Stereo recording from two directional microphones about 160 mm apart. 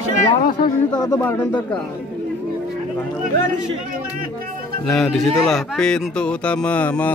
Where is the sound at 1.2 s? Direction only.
10° left (ahead or behind).